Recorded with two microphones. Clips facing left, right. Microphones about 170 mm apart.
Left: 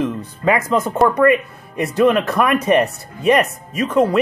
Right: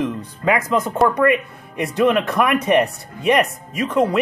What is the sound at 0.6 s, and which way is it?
A man's voice, 10° left (ahead or behind).